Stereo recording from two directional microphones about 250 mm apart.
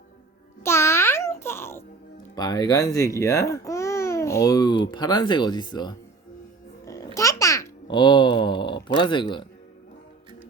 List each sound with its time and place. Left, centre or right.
0.6 s music: centre
2.3 s speech: centre
6.8 s babbling: centre